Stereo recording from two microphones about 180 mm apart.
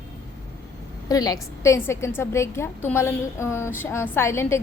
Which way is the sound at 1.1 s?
20° left (ahead or behind).